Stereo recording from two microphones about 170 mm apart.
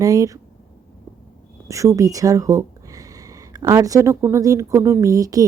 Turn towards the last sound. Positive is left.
turn(degrees=-20)  # may be behind; listen again after turning